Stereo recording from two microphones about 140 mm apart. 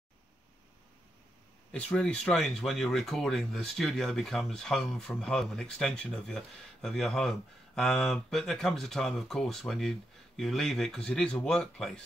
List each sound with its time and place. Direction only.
1.9 s speech: 5° left (ahead or behind)